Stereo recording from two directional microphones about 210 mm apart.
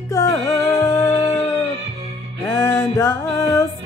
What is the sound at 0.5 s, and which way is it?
Music, 15° left (ahead or behind).